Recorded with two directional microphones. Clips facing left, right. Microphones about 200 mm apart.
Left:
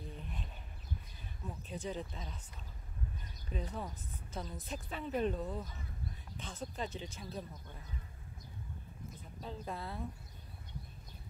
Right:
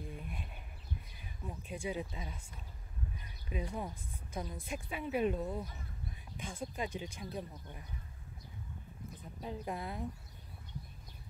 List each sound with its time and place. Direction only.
0.0 s a sound: 10° right (ahead or behind)
1.2 s speech: 10° right (ahead or behind)
3.4 s speech: 10° right (ahead or behind)
9.4 s speech: 15° right (ahead or behind)